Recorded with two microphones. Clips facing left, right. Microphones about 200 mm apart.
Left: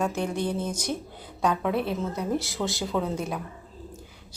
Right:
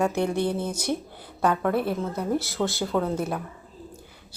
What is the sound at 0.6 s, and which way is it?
Speech, 10° right (ahead or behind).